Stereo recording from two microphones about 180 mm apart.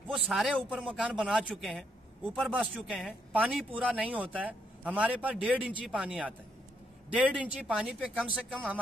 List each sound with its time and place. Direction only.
0.1 s a man's voice: centre (ahead or behind)
2.9 s a man's voice: 5° left (ahead or behind)
3.3 s a man's voice: 10° right (ahead or behind)